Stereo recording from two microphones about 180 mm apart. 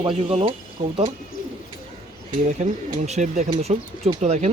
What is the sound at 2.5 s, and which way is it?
Speech, 40° right (ahead or behind).